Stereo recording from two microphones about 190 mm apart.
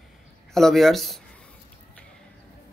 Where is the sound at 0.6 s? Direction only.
Centre (ahead or behind).